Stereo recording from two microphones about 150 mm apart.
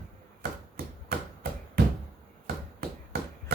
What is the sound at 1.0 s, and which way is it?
Chop, 90° right.